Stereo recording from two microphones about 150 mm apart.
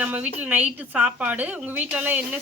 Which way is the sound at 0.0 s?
10° right (ahead or behind).